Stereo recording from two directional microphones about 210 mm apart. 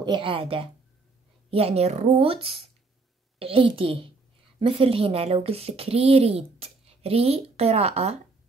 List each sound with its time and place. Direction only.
0.0 s speech: 25° right (ahead or behind)